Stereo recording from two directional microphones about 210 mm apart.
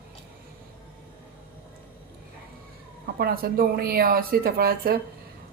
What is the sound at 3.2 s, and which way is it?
Speech, 45° right (ahead or behind).